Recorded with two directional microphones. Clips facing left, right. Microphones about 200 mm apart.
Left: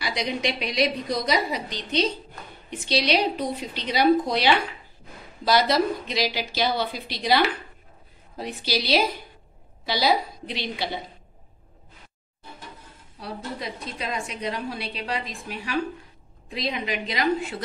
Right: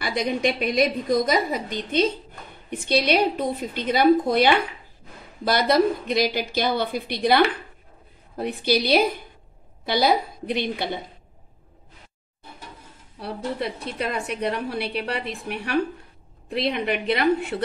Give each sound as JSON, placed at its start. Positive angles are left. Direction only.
{"t": 0.0, "sound": "a woman's voice", "side_deg": -50}
{"t": 13.2, "sound": "a woman's voice", "side_deg": -60}